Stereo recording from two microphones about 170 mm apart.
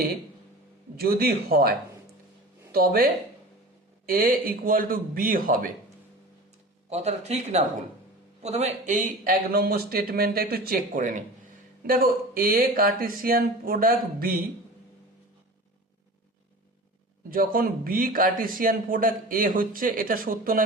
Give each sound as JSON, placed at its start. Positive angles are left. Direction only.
{"t": 0.9, "sound": "a man's voice", "side_deg": -65}
{"t": 2.7, "sound": "a man's voice", "side_deg": -60}
{"t": 6.9, "sound": "a man's voice", "side_deg": -40}
{"t": 17.2, "sound": "a man's voice", "side_deg": -55}